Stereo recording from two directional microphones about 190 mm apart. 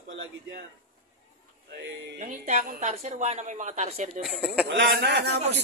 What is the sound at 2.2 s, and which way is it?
A woman's voice, 40° right (ahead or behind).